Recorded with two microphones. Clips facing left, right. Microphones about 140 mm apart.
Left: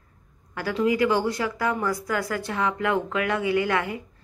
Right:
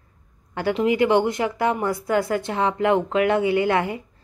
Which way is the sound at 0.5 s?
25° right (ahead or behind).